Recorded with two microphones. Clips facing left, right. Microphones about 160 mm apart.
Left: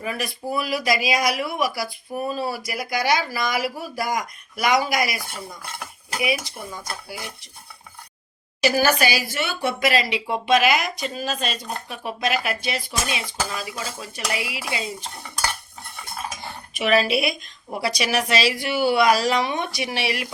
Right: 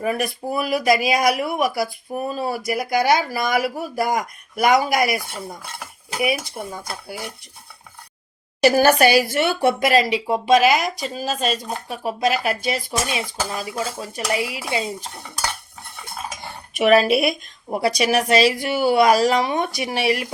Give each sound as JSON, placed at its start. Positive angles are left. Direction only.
{"t": 0.0, "sound": "a woman's voice", "side_deg": -50}
{"t": 8.6, "sound": "speech", "side_deg": -55}
{"t": 16.7, "sound": "a woman's voice", "side_deg": -50}